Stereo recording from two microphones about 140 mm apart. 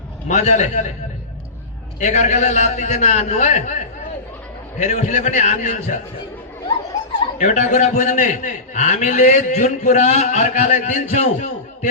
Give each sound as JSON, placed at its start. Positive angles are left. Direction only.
{"t": 0.3, "sound": "a man's voice", "side_deg": 55}
{"t": 2.0, "sound": "a man's voice", "side_deg": 55}
{"t": 4.8, "sound": "a man's voice", "side_deg": 55}
{"t": 7.3, "sound": "a man's voice", "side_deg": 60}